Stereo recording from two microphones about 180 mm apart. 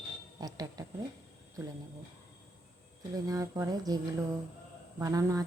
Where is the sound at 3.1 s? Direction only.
20° right (ahead or behind).